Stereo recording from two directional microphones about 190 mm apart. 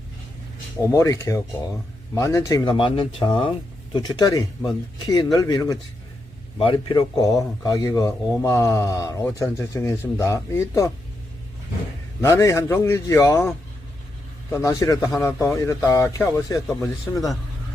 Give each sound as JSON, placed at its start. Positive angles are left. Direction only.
{"t": 0.9, "sound": "a man's voice", "side_deg": 15}
{"t": 12.2, "sound": "a man's voice", "side_deg": 15}
{"t": 14.5, "sound": "a man's voice", "side_deg": 15}